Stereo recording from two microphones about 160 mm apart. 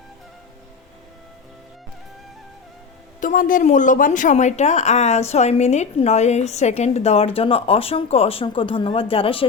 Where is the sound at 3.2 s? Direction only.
55° left (ahead or behind).